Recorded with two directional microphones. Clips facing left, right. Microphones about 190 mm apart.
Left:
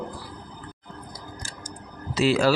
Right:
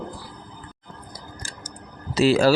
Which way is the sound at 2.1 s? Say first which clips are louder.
Right 3 dB; 40° right (ahead or behind).